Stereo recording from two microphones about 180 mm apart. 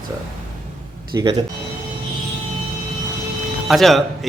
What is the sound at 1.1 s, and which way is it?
Speech, 25° right (ahead or behind).